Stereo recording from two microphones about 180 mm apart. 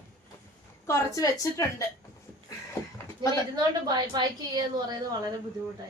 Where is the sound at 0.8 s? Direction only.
15° left (ahead or behind).